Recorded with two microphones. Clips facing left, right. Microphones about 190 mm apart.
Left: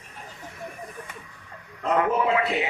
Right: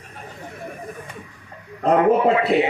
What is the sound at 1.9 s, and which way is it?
Speech, 35° right (ahead or behind).